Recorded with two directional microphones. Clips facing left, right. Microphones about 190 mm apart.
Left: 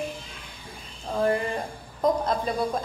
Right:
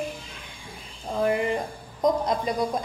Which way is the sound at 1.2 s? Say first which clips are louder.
Right 1 dB; 15° right (ahead or behind).